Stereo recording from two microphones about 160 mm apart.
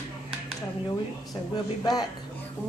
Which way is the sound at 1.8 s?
25° left (ahead or behind).